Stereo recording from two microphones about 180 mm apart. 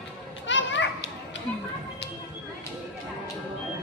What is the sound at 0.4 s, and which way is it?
Children playing, 90° left.